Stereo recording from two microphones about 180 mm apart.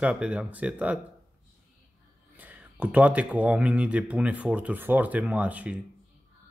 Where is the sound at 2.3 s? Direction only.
10° right (ahead or behind).